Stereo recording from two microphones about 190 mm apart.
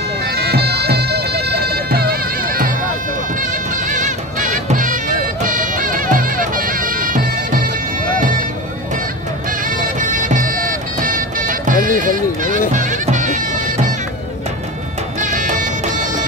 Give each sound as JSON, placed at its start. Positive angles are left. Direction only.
{"t": 0.3, "sound": "music", "side_deg": -55}
{"t": 9.7, "sound": "music", "side_deg": -40}
{"t": 15.1, "sound": "music", "side_deg": -40}